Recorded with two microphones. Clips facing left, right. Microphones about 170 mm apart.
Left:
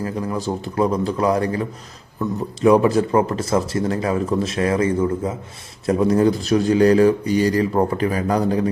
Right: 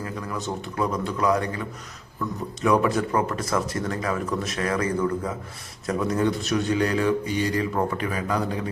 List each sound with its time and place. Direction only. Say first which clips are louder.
0.0 s speech: left 7 dB; 30° left (ahead or behind)